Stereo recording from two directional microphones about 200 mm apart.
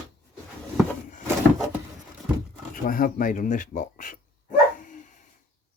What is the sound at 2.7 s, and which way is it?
Speech, 45° left (ahead or behind).